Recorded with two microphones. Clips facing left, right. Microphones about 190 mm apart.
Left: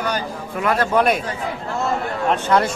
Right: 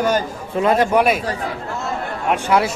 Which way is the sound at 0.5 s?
20° right (ahead or behind).